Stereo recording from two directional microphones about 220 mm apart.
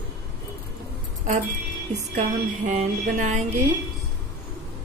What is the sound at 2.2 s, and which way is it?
Speech, 30° right (ahead or behind).